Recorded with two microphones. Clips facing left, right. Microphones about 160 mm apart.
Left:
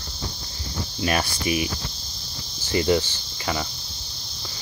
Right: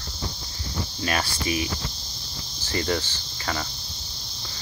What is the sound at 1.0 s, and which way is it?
Speech, 20° left (ahead or behind).